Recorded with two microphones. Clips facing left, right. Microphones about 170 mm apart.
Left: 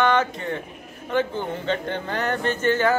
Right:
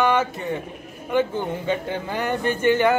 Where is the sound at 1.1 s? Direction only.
10° right (ahead or behind).